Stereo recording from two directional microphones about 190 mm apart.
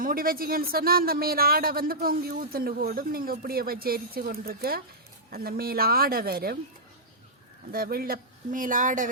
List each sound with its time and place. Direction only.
0.0 s speech: 50° right (ahead or behind)
7.7 s speech: 50° right (ahead or behind)